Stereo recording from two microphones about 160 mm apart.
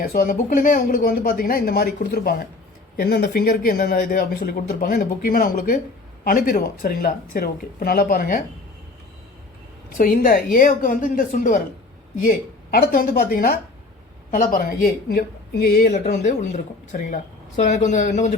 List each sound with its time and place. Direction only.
0.0 s speech: 65° left (ahead or behind)
10.0 s speech: 65° left (ahead or behind)
12.7 s speech: 65° left (ahead or behind)
15.1 s speech: 75° left (ahead or behind)
15.9 s speech: 50° left (ahead or behind)